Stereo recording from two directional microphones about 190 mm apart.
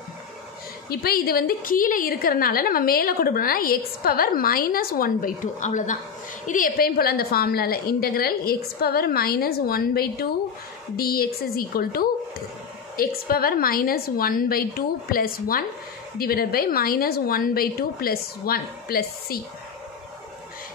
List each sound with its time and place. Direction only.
0.8 s a woman's voice: 55° left (ahead or behind)